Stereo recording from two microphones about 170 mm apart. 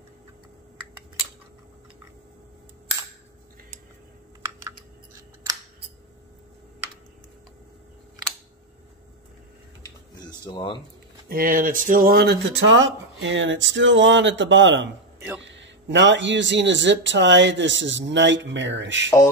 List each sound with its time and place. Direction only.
10.4 s speech: 25° left (ahead or behind)
11.2 s speech: 60° right (ahead or behind); by 19.0 s 90° right